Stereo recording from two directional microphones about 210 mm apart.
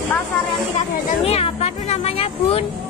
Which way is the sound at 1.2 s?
30° left (ahead or behind).